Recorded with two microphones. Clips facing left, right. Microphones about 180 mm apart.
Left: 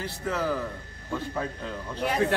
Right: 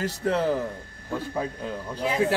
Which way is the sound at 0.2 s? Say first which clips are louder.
Right 4 dB; 30° right (ahead or behind).